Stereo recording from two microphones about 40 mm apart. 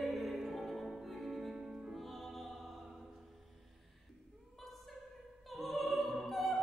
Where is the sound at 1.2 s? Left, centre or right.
Centre.